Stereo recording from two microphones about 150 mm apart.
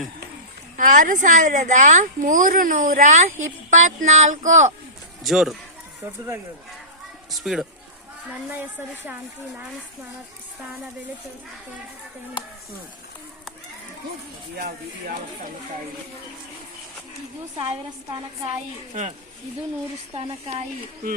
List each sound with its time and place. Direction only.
0.8 s speech: 60° right (ahead or behind)
5.2 s speech: centre (ahead or behind)
7.3 s a woman's voice: centre (ahead or behind)
17.6 s a woman's voice: 35° right (ahead or behind)
20.1 s a woman's voice: 40° right (ahead or behind)